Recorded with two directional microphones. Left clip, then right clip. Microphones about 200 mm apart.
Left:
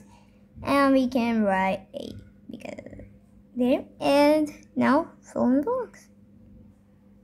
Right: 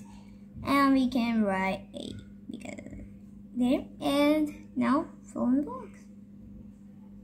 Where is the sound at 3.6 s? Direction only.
35° left (ahead or behind).